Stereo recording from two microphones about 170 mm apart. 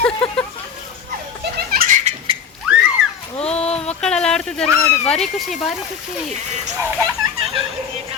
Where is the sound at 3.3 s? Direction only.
35° left (ahead or behind).